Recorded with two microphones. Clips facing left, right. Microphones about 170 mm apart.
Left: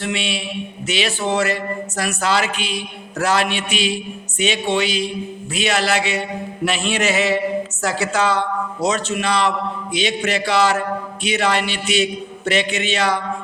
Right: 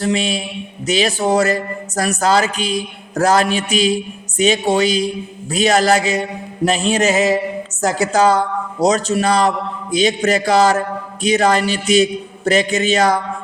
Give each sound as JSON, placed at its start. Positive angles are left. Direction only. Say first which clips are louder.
{"t": 0.0, "sound": "a man's voice", "louder": "right 6 dB", "side_deg": -40}